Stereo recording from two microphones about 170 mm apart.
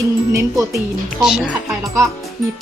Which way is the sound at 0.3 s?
15° right (ahead or behind).